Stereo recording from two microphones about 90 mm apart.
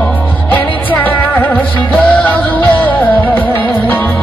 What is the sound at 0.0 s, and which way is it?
Music, 20° left (ahead or behind).